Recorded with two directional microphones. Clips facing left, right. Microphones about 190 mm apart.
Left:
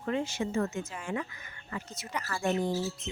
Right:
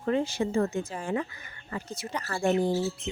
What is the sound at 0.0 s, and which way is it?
Speech, 35° right (ahead or behind).